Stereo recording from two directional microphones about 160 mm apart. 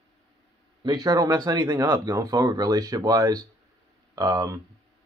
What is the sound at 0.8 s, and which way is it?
Speech, 25° right (ahead or behind).